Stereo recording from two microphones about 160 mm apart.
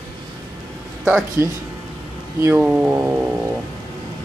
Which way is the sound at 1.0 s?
15° right (ahead or behind).